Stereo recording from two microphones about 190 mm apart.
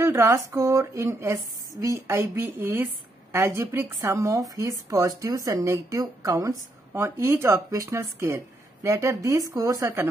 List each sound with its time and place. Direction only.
0.0 s a woman's voice: 15° right (ahead or behind)